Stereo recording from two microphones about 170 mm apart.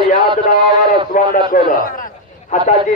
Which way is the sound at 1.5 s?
55° left (ahead or behind).